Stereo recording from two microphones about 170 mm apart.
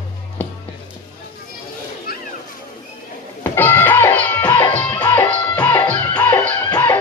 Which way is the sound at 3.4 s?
15° left (ahead or behind).